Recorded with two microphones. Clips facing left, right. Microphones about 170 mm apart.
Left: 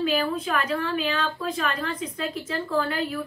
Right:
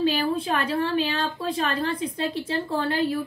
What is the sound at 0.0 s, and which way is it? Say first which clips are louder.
A woman's voice: right 1 dB; 30° right (ahead or behind).